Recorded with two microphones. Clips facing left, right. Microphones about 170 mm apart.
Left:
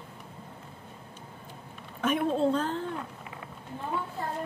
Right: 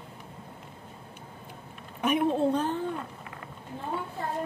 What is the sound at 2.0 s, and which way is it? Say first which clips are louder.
Speech: right 1 dB; 15° right (ahead or behind).